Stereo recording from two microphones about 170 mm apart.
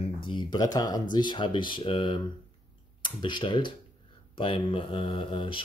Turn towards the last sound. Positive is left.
turn(degrees=30)  # may be behind; listen again after turning